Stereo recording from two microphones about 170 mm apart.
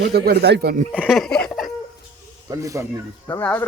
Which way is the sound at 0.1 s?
70° right (ahead or behind).